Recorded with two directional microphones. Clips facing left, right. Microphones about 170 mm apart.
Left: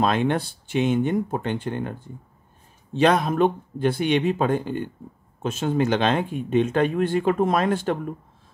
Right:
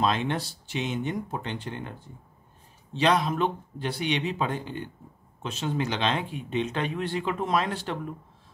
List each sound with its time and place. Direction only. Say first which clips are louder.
0.0 s speech: left 5 dB; 55° left (ahead or behind)